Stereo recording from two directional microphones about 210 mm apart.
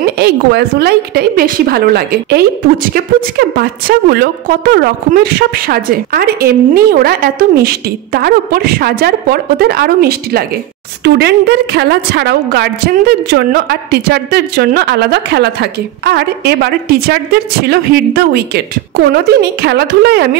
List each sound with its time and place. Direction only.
0.0 s a woman's voice: 50° right (ahead or behind)